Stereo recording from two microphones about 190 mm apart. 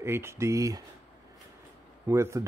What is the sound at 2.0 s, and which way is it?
Speech, 15° right (ahead or behind).